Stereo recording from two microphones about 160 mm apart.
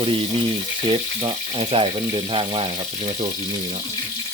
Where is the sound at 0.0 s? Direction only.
35° right (ahead or behind).